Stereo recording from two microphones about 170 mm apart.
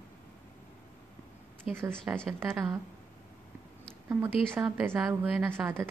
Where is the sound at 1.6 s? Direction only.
10° right (ahead or behind).